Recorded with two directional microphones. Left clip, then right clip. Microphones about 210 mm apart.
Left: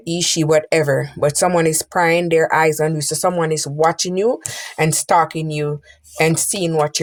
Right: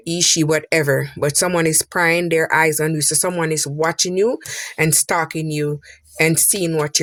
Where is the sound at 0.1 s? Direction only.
50° right (ahead or behind).